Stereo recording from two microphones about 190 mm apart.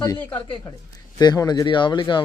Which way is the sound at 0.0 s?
15° left (ahead or behind).